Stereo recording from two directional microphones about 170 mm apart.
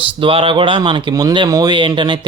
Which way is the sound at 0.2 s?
30° right (ahead or behind).